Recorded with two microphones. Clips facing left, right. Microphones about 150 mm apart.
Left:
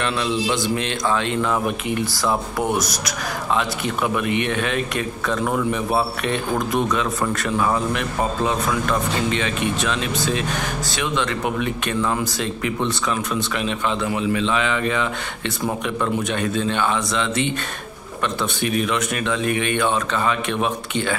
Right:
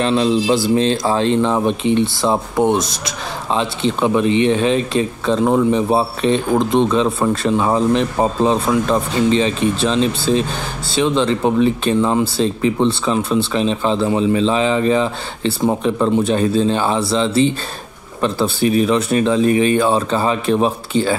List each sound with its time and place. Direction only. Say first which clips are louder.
0.0 s speech: right 7 dB; 30° right (ahead or behind)